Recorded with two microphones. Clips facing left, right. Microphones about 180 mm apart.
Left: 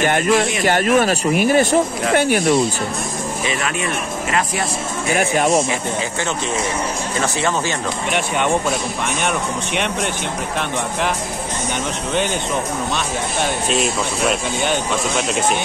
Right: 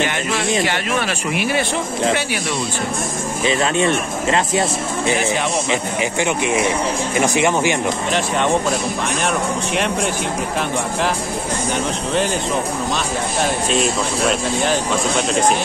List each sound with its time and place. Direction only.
0.7 s speech: 45° left (ahead or behind)
3.4 s speech: 30° right (ahead or behind)
6.2 s speech: 15° right (ahead or behind)
13.7 s speech: centre (ahead or behind)